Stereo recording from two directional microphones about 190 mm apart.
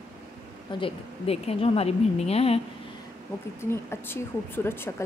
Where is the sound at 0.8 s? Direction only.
30° left (ahead or behind).